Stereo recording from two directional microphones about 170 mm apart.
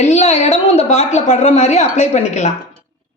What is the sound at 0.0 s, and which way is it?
A woman's voice, 40° left (ahead or behind).